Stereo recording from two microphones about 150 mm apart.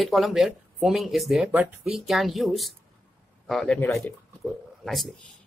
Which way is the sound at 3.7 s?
15° left (ahead or behind).